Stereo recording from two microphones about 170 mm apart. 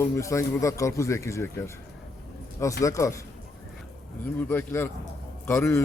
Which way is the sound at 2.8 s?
20° left (ahead or behind).